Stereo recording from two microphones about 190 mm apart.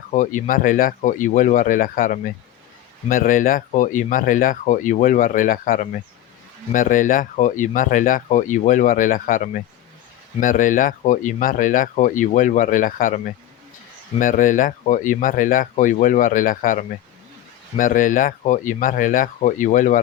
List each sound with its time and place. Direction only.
0.1 s speech: 40° left (ahead or behind)
14.2 s speech: 45° left (ahead or behind)